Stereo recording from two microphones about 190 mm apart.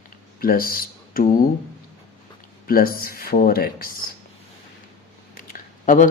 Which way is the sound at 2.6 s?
50° left (ahead or behind).